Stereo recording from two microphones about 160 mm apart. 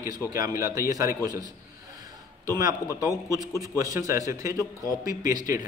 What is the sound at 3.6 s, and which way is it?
Speech, 20° right (ahead or behind).